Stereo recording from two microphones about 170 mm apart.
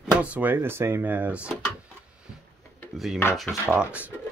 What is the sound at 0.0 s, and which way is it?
Speech, 10° right (ahead or behind).